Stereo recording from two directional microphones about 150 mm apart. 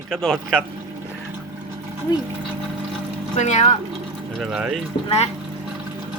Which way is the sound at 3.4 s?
50° left (ahead or behind).